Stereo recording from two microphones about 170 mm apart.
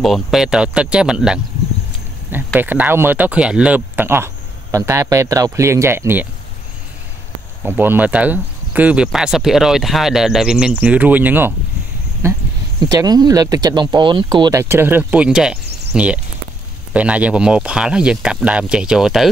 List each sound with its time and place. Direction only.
0.0 s speech: centre (ahead or behind)
7.6 s speech: 10° right (ahead or behind)